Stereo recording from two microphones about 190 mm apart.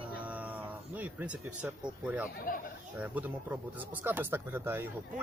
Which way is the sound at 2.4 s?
50° left (ahead or behind).